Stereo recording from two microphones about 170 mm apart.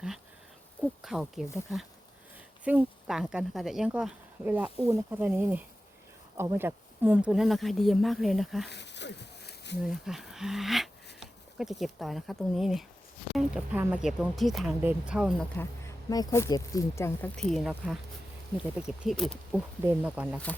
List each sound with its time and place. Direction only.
0.8 s speech: centre (ahead or behind)
2.6 s speech: 5° right (ahead or behind)
8.6 s a sound: 90° left
9.8 s speech: centre (ahead or behind)
15.6 s speech: 10° left (ahead or behind)
16.0 s speech: 20° left (ahead or behind)
17.3 s speech: 5° left (ahead or behind)